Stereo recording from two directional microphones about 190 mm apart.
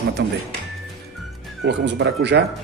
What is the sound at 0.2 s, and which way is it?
Speech, 60° right (ahead or behind).